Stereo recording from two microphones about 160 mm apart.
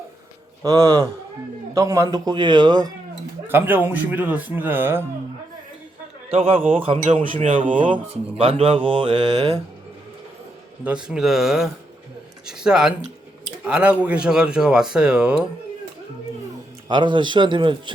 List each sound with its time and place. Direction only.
0.6 s a man's voice: 20° right (ahead or behind)
3.4 s speech: 10° right (ahead or behind)
6.3 s speech: 35° right (ahead or behind)
6.6 s speech: 10° right (ahead or behind)
6.8 s speech: 35° right (ahead or behind)
7.6 s speech: 55° right (ahead or behind)
7.9 s speech: 35° right (ahead or behind)
10.8 s speech: 5° right (ahead or behind)
16.9 s a man's voice: 30° right (ahead or behind)